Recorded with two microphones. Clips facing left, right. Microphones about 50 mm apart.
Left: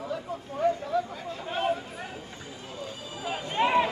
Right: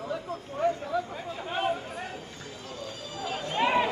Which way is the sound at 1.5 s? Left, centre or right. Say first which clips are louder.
Left 1 dB; centre.